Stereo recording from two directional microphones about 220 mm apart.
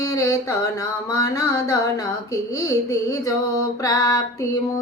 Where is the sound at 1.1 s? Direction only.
15° left (ahead or behind).